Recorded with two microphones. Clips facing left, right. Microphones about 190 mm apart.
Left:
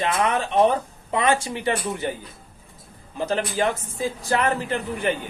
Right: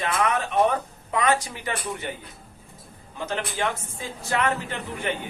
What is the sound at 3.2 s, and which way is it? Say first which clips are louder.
Speech: left 5 dB; 35° left (ahead or behind).